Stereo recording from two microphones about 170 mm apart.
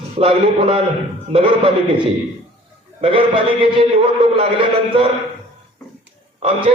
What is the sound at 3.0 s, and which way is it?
A man's voice, 30° right (ahead or behind).